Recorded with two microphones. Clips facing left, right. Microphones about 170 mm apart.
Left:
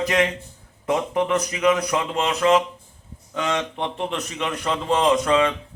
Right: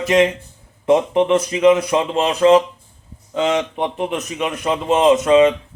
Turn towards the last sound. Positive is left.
turn(degrees=-20)  # may be behind; listen again after turning